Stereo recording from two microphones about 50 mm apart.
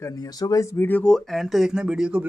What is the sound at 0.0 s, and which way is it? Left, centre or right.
Speech, left.